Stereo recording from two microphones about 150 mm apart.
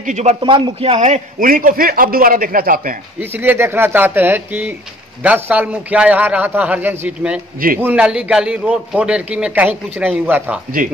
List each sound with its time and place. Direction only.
0.0 s a man's voice: 50° right (ahead or behind)
0.4 s a man's voice: 35° right (ahead or behind)
1.4 s a man's voice: 70° right (ahead or behind)
3.2 s a man's voice: 15° right (ahead or behind)